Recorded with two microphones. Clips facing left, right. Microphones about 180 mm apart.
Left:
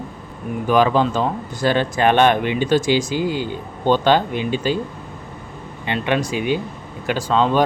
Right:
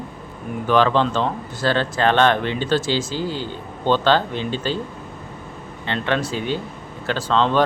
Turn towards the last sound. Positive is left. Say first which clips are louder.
# left 1 dB
turn(degrees=10)  # may be behind; listen again after turning